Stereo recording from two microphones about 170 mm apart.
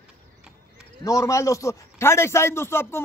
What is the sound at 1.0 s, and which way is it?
A man's voice, 20° left (ahead or behind).